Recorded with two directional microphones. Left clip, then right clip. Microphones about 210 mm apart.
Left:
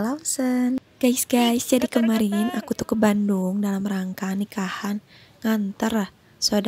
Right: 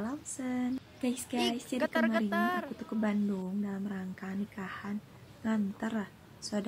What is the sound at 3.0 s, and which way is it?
A woman's voice, 45° left (ahead or behind).